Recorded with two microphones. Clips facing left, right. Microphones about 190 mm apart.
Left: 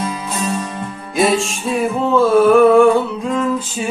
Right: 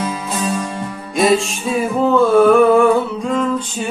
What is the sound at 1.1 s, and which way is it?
Music, centre (ahead or behind).